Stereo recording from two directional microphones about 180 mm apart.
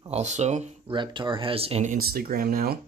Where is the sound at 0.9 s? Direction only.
25° right (ahead or behind).